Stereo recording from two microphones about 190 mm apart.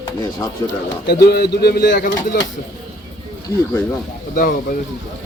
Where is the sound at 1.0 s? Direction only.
60° left (ahead or behind).